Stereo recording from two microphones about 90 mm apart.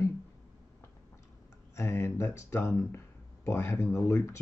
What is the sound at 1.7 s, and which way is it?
Speech, 35° left (ahead or behind).